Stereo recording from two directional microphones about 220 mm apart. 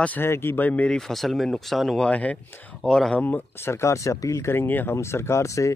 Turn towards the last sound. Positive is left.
turn(degrees=15)  # may be behind; listen again after turning